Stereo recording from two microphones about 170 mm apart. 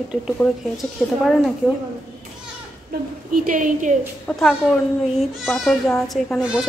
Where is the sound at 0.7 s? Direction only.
Centre (ahead or behind).